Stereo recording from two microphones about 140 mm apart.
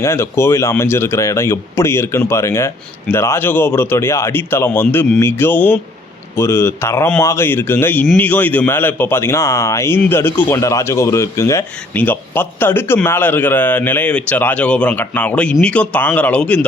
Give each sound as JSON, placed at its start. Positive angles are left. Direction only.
{"t": 0.0, "sound": "speech", "side_deg": 20}